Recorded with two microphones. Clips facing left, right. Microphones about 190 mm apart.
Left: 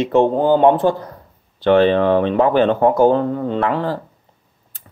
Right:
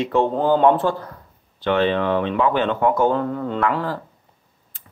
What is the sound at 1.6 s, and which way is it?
Speech, 40° left (ahead or behind).